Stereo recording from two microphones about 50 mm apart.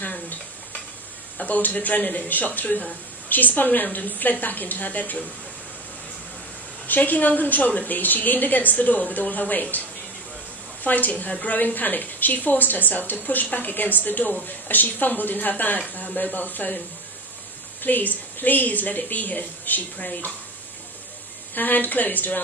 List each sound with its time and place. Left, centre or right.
0.0 s a sound: left
1.4 s a woman's voice: left
6.9 s a woman's voice: left
17.8 s a woman's voice: left
21.5 s a woman's voice: left